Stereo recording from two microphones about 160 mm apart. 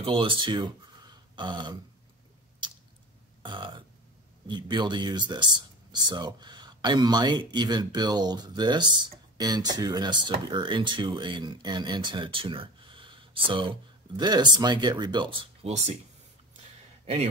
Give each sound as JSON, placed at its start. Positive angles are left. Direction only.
{"t": 0.0, "sound": "speech", "side_deg": -30}
{"t": 3.4, "sound": "burping", "side_deg": -30}
{"t": 4.5, "sound": "speech", "side_deg": -30}
{"t": 17.0, "sound": "a man's voice", "side_deg": -40}